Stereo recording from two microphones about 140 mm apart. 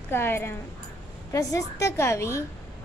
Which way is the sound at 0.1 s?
15° left (ahead or behind).